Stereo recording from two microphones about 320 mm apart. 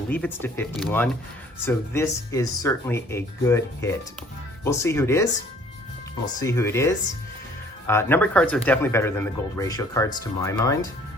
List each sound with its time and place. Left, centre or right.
0.1 s speech: centre
6.4 s speech: centre